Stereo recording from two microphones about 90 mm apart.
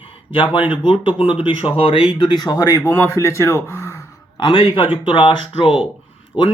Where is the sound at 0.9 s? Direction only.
85° left.